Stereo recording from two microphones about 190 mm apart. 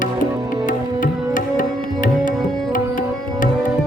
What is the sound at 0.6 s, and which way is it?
Music, 45° left (ahead or behind).